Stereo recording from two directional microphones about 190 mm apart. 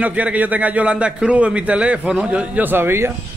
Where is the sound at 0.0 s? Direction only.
5° right (ahead or behind).